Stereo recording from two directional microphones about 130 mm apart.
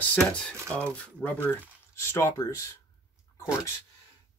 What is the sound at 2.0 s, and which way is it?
Speech, 20° left (ahead or behind).